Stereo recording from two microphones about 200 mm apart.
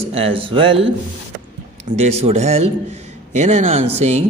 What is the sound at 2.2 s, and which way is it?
A man's voice, 35° right (ahead or behind).